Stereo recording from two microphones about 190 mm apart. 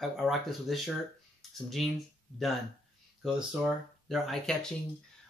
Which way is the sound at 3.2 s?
Centre (ahead or behind).